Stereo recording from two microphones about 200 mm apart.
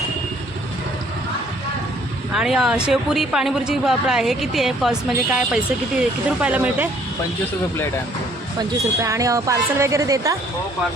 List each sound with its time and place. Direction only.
2.3 s a woman's voice: 5° right (ahead or behind)
9.0 s speech: 15° right (ahead or behind)